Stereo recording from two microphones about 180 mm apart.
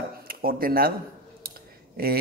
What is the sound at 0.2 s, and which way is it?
Speech, 55° right (ahead or behind).